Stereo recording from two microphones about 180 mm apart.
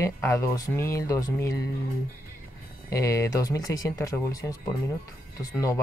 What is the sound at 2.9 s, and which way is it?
Speech, 15° left (ahead or behind).